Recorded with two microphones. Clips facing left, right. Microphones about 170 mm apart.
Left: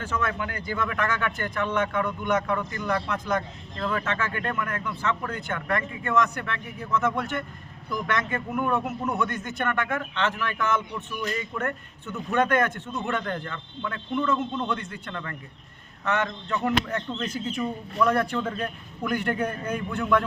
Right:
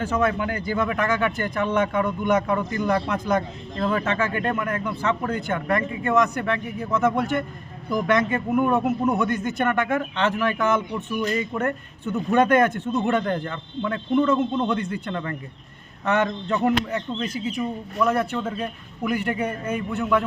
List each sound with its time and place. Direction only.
0.0 s a man's voice: 15° right (ahead or behind)
16.9 s speech: 10° right (ahead or behind)